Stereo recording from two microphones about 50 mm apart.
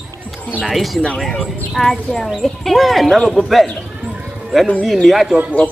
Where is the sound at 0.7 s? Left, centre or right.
Centre.